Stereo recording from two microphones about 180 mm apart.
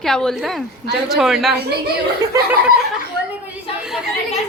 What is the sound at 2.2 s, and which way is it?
Speech, 15° right (ahead or behind).